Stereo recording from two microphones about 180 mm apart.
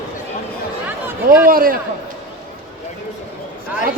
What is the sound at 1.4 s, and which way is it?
Speech, 55° right (ahead or behind).